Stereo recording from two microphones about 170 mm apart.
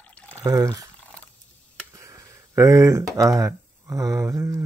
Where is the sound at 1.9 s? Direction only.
20° right (ahead or behind).